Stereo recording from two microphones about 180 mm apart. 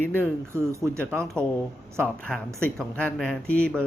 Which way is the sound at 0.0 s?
10° left (ahead or behind).